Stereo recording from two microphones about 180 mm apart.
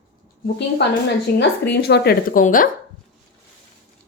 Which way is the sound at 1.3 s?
55° left (ahead or behind).